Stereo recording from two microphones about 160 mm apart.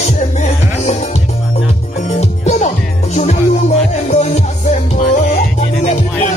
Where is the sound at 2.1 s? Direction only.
45° left (ahead or behind).